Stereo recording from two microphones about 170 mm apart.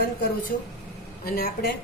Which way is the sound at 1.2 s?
60° left (ahead or behind).